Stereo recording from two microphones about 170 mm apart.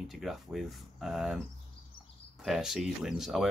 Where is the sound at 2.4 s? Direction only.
Centre (ahead or behind).